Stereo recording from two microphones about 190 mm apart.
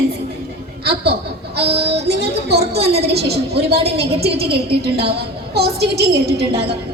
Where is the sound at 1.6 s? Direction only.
30° right (ahead or behind).